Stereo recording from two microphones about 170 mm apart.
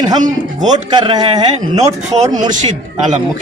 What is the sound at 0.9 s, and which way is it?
Speech, 25° right (ahead or behind).